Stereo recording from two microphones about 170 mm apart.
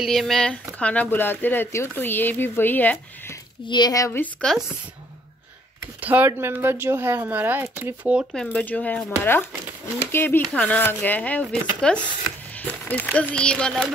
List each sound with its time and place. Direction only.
0.0 s speech: centre (ahead or behind)
3.6 s speech: 25° left (ahead or behind); by 4.6 s 5° left (ahead or behind)
5.8 s speech: 10° right (ahead or behind)
8.5 s speech: 10° left (ahead or behind)
10.1 s speech: 10° left (ahead or behind)